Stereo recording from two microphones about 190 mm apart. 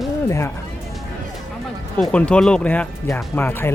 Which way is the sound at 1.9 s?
5° left (ahead or behind).